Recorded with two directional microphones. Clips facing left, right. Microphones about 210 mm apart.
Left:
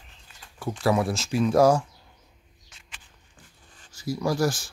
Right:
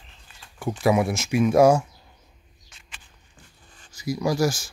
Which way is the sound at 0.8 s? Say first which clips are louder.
Right 3 dB; 20° right (ahead or behind).